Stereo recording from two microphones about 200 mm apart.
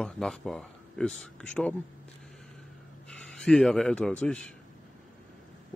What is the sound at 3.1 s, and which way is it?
A man's voice, 5° left (ahead or behind).